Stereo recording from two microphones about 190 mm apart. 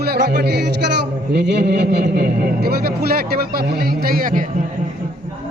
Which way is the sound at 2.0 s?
50° right (ahead or behind).